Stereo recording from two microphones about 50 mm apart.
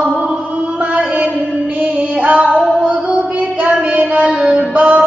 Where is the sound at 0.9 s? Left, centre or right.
Right.